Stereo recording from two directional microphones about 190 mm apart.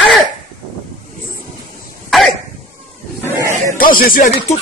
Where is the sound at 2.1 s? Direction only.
Centre (ahead or behind).